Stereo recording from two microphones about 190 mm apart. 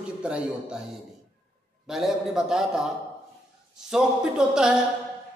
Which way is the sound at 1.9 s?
5° right (ahead or behind).